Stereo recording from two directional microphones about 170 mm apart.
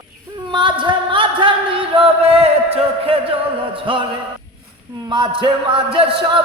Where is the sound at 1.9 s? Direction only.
35° right (ahead or behind).